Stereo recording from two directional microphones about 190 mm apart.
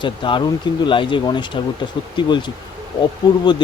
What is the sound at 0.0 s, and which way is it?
Speech, 25° left (ahead or behind).